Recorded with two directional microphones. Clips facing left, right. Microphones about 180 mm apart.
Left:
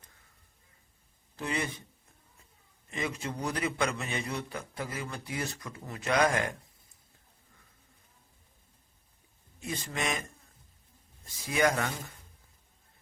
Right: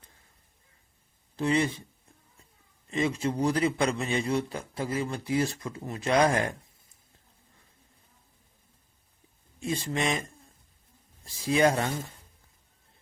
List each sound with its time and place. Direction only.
1.4 s a man's voice: 30° right (ahead or behind)
2.9 s a man's voice: 25° right (ahead or behind)
9.6 s a man's voice: 25° right (ahead or behind)
11.4 s a man's voice: 30° right (ahead or behind)